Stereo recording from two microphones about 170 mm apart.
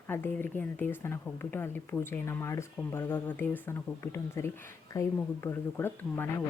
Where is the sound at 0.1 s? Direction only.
10° left (ahead or behind).